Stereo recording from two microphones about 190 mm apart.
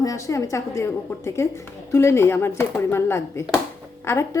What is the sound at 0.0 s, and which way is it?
A woman's voice, 15° left (ahead or behind).